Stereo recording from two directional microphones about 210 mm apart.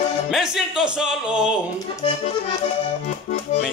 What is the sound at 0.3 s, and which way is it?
A man's voice, centre (ahead or behind).